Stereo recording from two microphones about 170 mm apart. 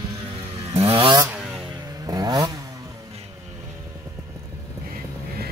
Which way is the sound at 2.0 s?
20° right (ahead or behind).